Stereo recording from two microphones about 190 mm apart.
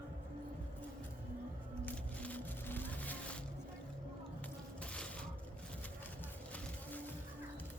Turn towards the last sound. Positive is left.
turn(degrees=10)  # may be behind; listen again after turning